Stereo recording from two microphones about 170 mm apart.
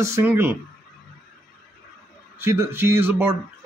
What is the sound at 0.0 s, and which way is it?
Speech, 15° right (ahead or behind).